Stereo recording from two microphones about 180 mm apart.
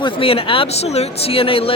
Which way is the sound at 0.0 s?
30° left (ahead or behind).